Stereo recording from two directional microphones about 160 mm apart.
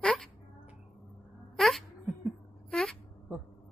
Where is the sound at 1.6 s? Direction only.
Centre (ahead or behind).